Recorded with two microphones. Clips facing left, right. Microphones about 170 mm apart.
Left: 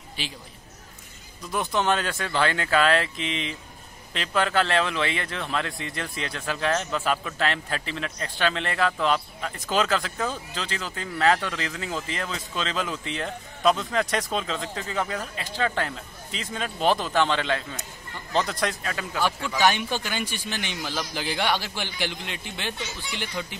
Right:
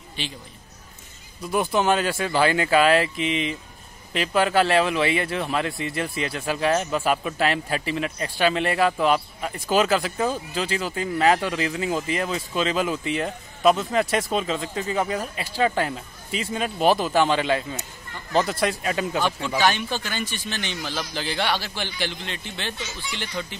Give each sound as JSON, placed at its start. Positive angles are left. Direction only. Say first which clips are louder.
{"t": 0.2, "sound": "a man's voice", "louder": "right 2 dB", "side_deg": 5}
{"t": 1.4, "sound": "speech", "louder": "right 4 dB", "side_deg": -10}
{"t": 18.9, "sound": "a man's voice", "louder": "right 5 dB", "side_deg": -20}
{"t": 19.6, "sound": "a man's voice", "louder": "left 1 dB", "side_deg": 15}